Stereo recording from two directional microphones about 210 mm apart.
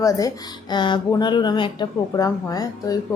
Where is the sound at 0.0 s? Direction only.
15° left (ahead or behind).